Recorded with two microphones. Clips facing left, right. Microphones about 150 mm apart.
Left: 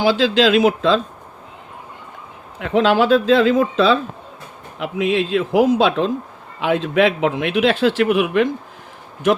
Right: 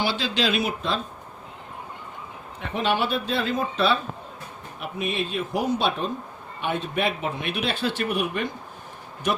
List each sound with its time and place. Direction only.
0.0 s a man's voice: 90° left
2.6 s a man's voice: 90° left
4.8 s a man's voice: 90° left